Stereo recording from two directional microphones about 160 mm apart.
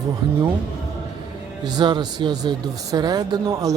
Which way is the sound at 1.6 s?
25° right (ahead or behind).